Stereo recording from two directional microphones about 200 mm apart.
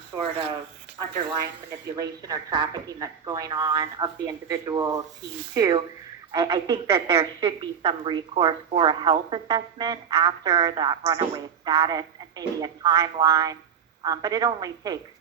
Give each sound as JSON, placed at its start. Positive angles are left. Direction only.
{"t": 0.1, "sound": "a woman's voice", "side_deg": -20}
{"t": 2.0, "sound": "a woman's voice", "side_deg": -20}